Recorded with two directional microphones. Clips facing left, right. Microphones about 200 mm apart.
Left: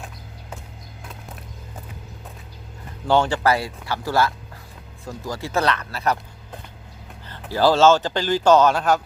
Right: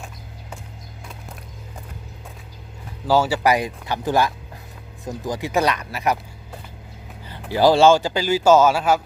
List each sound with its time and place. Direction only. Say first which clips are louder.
3.1 s speech: right 1 dB; 5° right (ahead or behind)